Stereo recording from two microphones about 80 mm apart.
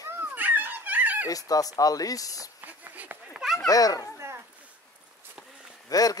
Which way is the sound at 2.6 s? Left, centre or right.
Right.